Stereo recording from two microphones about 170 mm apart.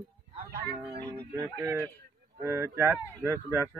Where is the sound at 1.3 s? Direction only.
15° right (ahead or behind).